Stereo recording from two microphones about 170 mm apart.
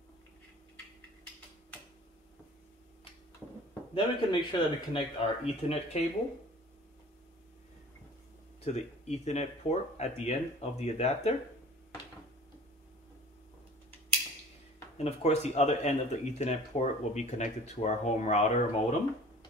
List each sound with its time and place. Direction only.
3.9 s speech: 30° left (ahead or behind)
8.6 s speech: 40° left (ahead or behind)
15.0 s speech: 40° left (ahead or behind)